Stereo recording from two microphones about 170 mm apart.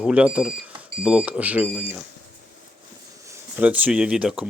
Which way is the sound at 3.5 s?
10° right (ahead or behind).